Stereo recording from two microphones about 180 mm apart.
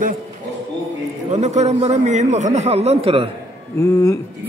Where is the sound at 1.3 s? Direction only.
40° right (ahead or behind).